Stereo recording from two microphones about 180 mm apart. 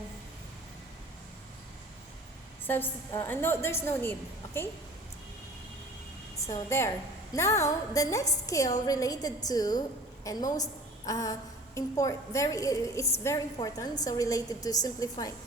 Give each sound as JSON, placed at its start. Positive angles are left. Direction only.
{"t": 2.6, "sound": "a woman's voice", "side_deg": 10}
{"t": 4.4, "sound": "a sound", "side_deg": 15}
{"t": 6.3, "sound": "a woman's voice", "side_deg": 15}